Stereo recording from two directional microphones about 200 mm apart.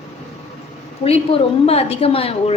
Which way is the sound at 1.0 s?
30° left (ahead or behind).